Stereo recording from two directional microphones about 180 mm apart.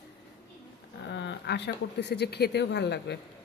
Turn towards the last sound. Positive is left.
turn(degrees=70)  # may be behind; listen again after turning